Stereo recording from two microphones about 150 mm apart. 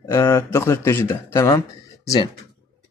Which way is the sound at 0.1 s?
20° left (ahead or behind).